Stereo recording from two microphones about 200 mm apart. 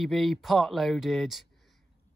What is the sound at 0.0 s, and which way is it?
Speech, centre (ahead or behind).